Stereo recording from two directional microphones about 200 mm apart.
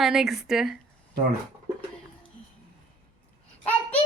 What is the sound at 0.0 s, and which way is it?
Speech, centre (ahead or behind).